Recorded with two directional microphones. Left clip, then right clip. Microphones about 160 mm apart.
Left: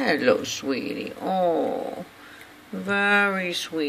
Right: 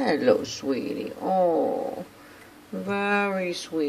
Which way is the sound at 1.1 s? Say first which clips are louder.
Right 2 dB; 15° left (ahead or behind).